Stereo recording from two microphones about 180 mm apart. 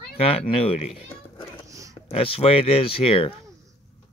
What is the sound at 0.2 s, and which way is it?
Speech, 30° left (ahead or behind).